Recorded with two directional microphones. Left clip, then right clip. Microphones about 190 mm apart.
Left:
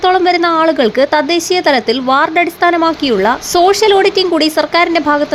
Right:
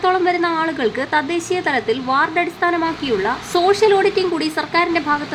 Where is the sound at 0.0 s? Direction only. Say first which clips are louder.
Left 6 dB; 30° left (ahead or behind).